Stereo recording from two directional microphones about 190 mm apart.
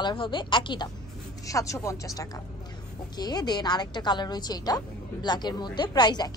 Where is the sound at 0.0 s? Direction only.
25° left (ahead or behind).